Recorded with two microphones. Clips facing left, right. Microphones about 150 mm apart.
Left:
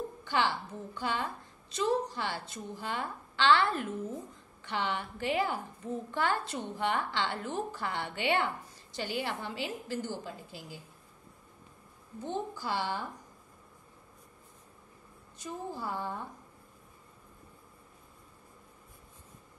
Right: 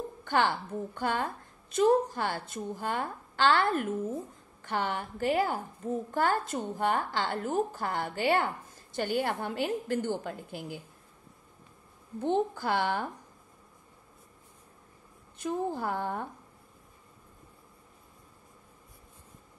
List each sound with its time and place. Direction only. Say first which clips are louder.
0.2 s a woman's voice: right 4 dB; 50° right (ahead or behind)
12.5 s a woman's voice: right 5 dB; 60° right (ahead or behind)
15.3 s a woman's voice: right 8 dB; 55° right (ahead or behind)